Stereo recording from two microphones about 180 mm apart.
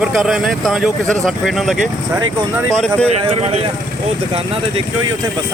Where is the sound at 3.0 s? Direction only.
35° right (ahead or behind).